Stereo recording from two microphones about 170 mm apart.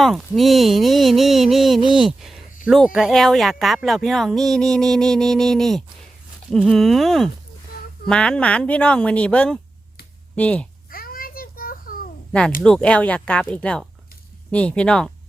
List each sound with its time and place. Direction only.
0.0 s speech: centre (ahead or behind)
10.8 s children playing: 60° left (ahead or behind)
12.6 s speech: 5° left (ahead or behind)